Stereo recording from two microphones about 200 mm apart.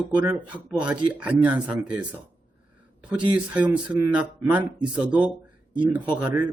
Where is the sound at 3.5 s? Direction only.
5° right (ahead or behind).